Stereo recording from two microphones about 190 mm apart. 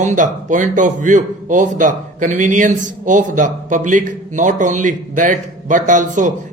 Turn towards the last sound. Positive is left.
turn(degrees=-40)  # may be behind; listen again after turning